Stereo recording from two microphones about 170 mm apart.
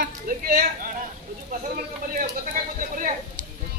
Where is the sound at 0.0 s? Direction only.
60° right (ahead or behind).